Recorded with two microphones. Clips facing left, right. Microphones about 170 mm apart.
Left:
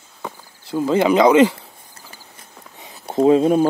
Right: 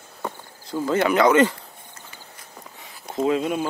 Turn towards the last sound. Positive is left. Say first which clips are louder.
# left 8 dB
turn(degrees=35)  # may be behind; listen again after turning